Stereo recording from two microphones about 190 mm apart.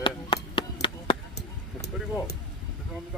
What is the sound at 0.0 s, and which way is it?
Chop, 25° left (ahead or behind).